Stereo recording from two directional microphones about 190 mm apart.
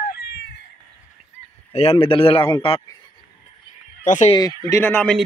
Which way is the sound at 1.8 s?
30° left (ahead or behind).